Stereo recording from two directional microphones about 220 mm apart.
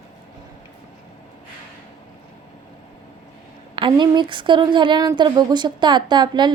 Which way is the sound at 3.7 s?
20° right (ahead or behind).